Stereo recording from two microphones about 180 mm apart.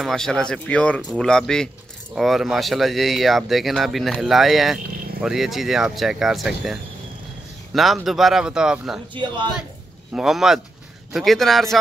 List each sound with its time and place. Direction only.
0.0 s speech: 5° left (ahead or behind)
9.1 s a man's voice: 25° right (ahead or behind)
10.1 s speech: centre (ahead or behind)